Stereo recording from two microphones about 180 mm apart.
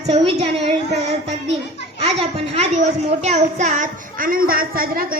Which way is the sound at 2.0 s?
35° right (ahead or behind).